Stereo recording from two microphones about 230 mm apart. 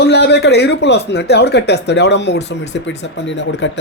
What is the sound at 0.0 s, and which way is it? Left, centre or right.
Speech, left.